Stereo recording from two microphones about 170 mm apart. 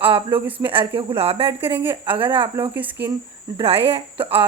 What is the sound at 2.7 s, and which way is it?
Speech, 10° right (ahead or behind).